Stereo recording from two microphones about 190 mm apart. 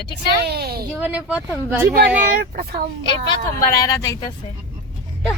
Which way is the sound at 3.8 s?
15° left (ahead or behind).